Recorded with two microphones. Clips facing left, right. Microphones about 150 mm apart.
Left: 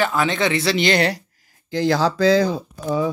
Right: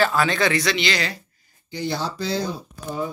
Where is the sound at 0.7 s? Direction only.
50° left (ahead or behind).